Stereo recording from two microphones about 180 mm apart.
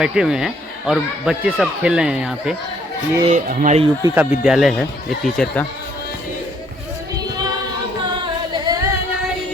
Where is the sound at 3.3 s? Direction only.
45° right (ahead or behind).